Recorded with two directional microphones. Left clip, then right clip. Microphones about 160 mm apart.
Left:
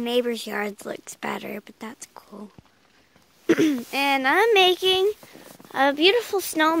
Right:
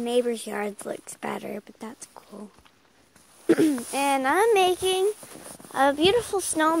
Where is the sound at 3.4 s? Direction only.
15° left (ahead or behind).